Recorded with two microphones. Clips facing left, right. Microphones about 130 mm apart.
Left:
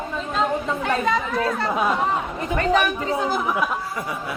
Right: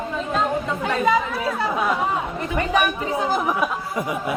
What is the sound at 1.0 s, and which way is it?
Speech, 5° right (ahead or behind).